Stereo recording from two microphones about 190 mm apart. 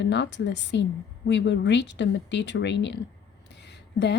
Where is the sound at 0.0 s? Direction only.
65° left (ahead or behind).